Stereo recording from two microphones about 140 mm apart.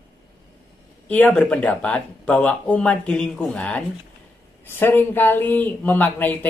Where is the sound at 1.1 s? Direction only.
10° left (ahead or behind).